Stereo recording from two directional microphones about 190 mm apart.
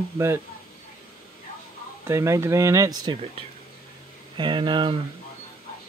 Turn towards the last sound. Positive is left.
turn(degrees=-25)  # may be behind; listen again after turning